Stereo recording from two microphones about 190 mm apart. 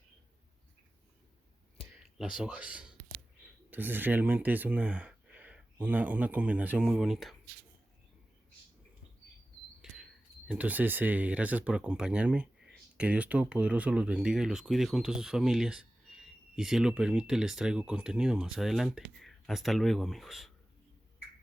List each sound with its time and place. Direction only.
2.1 s speech: 5° right (ahead or behind)
10.5 s speech: 10° right (ahead or behind)